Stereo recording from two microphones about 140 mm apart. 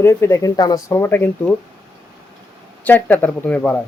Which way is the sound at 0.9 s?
15° left (ahead or behind).